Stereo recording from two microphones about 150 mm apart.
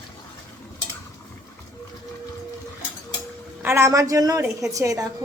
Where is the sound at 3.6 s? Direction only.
20° right (ahead or behind).